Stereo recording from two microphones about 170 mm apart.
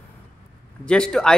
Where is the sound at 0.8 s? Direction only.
5° left (ahead or behind).